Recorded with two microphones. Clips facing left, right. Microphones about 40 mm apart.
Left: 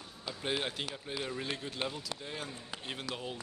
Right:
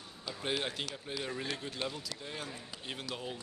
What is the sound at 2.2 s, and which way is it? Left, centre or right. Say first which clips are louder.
Speech: left 1 dB; centre.